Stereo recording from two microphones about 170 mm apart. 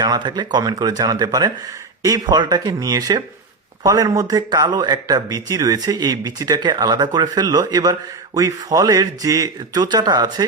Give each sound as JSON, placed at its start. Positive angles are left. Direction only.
{"t": 0.0, "sound": "a man's voice", "side_deg": -25}